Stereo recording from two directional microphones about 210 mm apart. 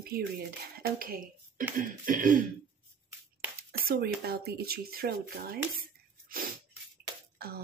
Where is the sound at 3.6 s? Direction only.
45° right (ahead or behind).